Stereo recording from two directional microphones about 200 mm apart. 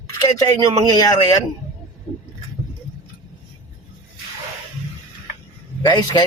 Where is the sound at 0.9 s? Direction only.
20° left (ahead or behind).